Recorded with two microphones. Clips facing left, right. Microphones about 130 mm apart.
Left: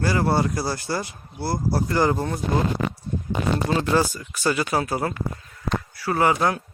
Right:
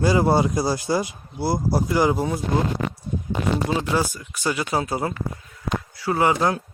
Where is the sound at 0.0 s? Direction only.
15° right (ahead or behind).